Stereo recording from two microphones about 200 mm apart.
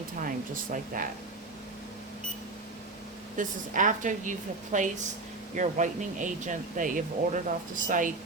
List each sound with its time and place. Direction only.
0.2 s speech: 45° right (ahead or behind)
3.3 s a woman's voice: 40° right (ahead or behind)